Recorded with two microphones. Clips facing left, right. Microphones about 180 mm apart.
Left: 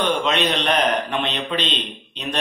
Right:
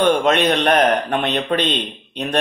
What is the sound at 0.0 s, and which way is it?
A man's voice, 50° right (ahead or behind).